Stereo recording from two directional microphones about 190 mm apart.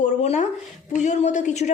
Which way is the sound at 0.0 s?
40° left (ahead or behind).